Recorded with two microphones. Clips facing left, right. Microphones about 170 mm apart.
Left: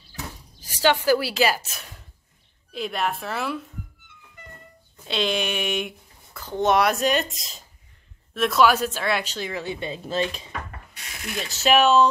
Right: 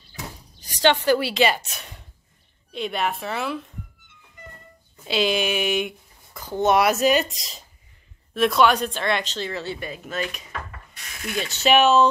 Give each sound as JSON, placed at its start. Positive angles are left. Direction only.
{"t": 0.6, "sound": "a woman's voice", "side_deg": 10}
{"t": 5.0, "sound": "a woman's voice", "side_deg": -5}
{"t": 6.3, "sound": "a sound", "side_deg": -10}
{"t": 6.6, "sound": "a woman's voice", "side_deg": 0}
{"t": 9.8, "sound": "speech", "side_deg": 25}
{"t": 11.3, "sound": "a woman's voice", "side_deg": 0}